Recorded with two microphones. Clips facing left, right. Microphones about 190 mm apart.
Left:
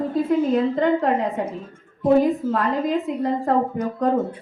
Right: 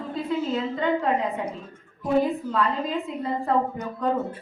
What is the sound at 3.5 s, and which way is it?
Speech, 45° left (ahead or behind).